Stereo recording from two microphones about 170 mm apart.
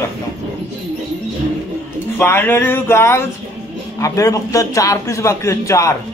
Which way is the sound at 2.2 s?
15° left (ahead or behind).